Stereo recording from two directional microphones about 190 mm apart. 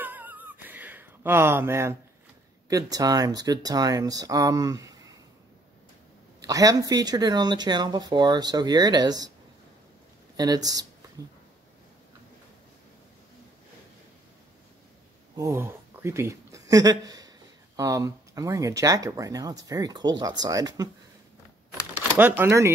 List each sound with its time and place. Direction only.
0.0 s a sound: 10° right (ahead or behind)
2.7 s speech: 20° right (ahead or behind)
6.4 s speech: 20° right (ahead or behind)
10.3 s speech: 20° right (ahead or behind)
15.3 s speech: 15° right (ahead or behind)
21.9 s speech: 10° right (ahead or behind)